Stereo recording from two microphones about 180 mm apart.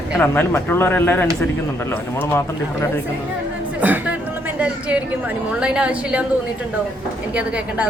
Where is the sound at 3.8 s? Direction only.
10° right (ahead or behind).